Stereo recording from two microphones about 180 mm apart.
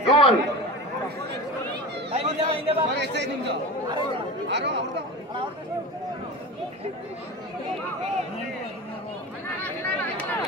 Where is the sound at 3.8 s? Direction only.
25° right (ahead or behind).